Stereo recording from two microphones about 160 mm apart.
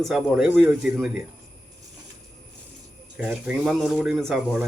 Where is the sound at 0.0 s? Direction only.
5° right (ahead or behind).